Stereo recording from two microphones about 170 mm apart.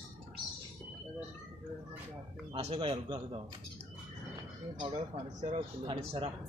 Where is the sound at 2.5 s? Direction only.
35° right (ahead or behind).